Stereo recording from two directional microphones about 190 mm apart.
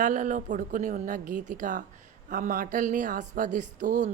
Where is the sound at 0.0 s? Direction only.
45° right (ahead or behind).